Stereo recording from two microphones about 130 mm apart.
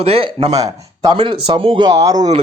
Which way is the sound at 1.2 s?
40° right (ahead or behind).